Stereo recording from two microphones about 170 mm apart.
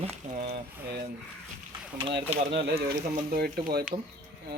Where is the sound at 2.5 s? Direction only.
80° right.